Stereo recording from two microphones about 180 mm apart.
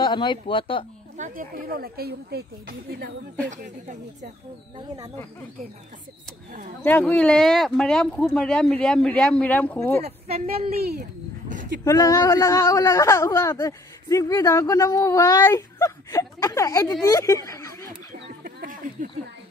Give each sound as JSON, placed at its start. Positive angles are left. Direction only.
{"t": 0.0, "sound": "speech", "side_deg": 25}
{"t": 1.1, "sound": "speech", "side_deg": -45}
{"t": 3.4, "sound": "speech", "side_deg": -45}
{"t": 4.7, "sound": "speech", "side_deg": -20}
{"t": 6.8, "sound": "speech", "side_deg": 10}
{"t": 10.0, "sound": "a woman's voice", "side_deg": -35}
{"t": 10.8, "sound": "speech", "side_deg": -60}
{"t": 11.4, "sound": "a sound", "side_deg": -45}
{"t": 11.8, "sound": "speech", "side_deg": 20}
{"t": 18.4, "sound": "a sound", "side_deg": -50}